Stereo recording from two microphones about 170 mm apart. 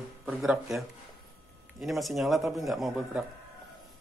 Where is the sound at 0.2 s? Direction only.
5° right (ahead or behind).